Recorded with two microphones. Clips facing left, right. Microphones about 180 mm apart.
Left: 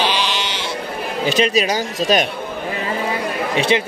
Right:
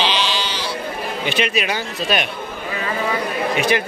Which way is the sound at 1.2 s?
40° left (ahead or behind).